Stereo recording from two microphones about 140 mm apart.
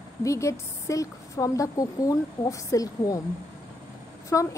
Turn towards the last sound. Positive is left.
turn(degrees=25)  # may be behind; listen again after turning